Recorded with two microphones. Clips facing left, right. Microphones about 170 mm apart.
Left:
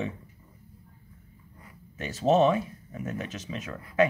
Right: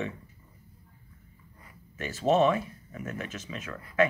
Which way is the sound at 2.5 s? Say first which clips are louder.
Left 2 dB; 20° left (ahead or behind).